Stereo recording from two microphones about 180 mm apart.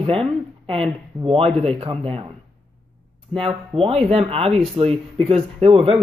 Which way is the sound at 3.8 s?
35° right (ahead or behind).